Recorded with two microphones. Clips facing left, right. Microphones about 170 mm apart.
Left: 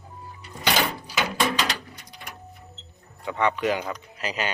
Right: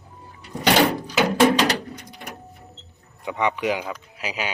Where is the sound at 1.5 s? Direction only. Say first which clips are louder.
Right 7 dB; 65° right (ahead or behind).